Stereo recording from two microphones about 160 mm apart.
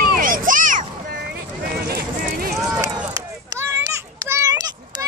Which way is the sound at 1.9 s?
70° right (ahead or behind).